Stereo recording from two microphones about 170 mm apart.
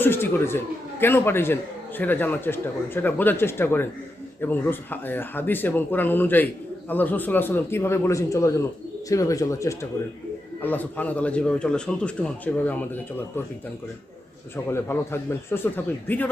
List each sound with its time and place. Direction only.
0.0 s speech: 15° left (ahead or behind)
14.5 s speech: 15° left (ahead or behind)